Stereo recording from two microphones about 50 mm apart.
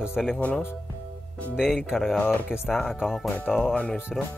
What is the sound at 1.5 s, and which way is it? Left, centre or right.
Speech, centre.